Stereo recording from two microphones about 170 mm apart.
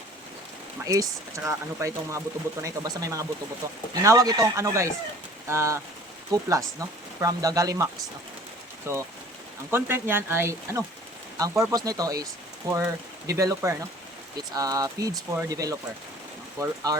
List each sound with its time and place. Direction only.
0.9 s speech: 20° right (ahead or behind)
8.9 s speech: 15° right (ahead or behind)